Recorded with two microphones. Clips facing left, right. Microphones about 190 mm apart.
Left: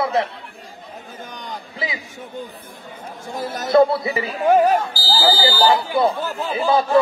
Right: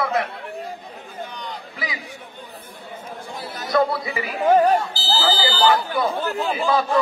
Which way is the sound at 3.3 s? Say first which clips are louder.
Left 10 dB; 45° left (ahead or behind).